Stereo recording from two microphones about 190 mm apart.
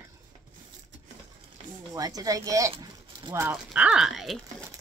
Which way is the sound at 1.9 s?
20° right (ahead or behind).